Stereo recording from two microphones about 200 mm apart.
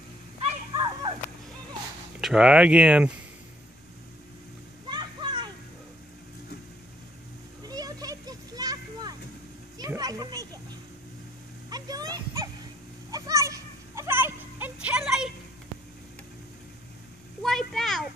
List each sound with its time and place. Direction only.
0.4 s dog: 25° right (ahead or behind)
2.1 s speech: 5° right (ahead or behind)
4.8 s children playing: 20° right (ahead or behind)
7.6 s children playing: 20° right (ahead or behind)
9.8 s music: 20° right (ahead or behind)
11.7 s a sound: 20° right (ahead or behind)
13.1 s children playing: 15° right (ahead or behind)
17.4 s a sound: centre (ahead or behind)